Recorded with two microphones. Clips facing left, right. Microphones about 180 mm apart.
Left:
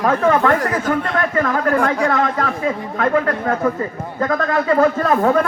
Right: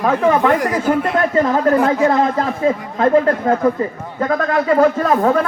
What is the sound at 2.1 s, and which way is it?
A man's voice, 30° right (ahead or behind).